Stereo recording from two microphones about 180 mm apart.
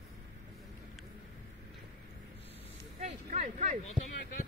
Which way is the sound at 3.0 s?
35° right (ahead or behind).